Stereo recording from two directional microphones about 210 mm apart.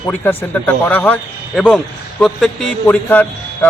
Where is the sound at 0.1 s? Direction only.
5° left (ahead or behind).